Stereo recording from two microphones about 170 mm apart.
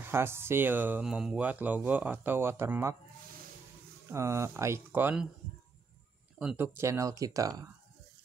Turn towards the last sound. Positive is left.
turn(degrees=-20)  # may be behind; listen again after turning